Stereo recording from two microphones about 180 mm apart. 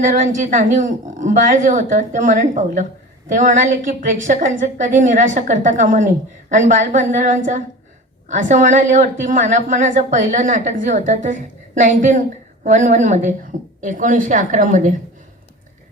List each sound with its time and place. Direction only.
0.0 s a woman's voice: 45° right (ahead or behind)